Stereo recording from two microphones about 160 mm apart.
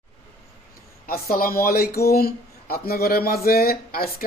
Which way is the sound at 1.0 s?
65° left (ahead or behind).